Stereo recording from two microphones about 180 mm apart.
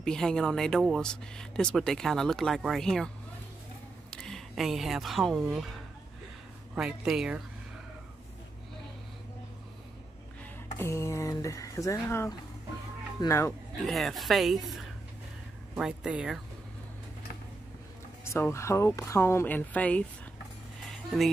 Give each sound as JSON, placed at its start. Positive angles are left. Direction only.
{"t": 0.0, "sound": "speech", "side_deg": 5}
{"t": 4.1, "sound": "speech", "side_deg": 0}
{"t": 10.8, "sound": "speech", "side_deg": 15}
{"t": 13.8, "sound": "speech", "side_deg": 0}
{"t": 18.2, "sound": "speech", "side_deg": 15}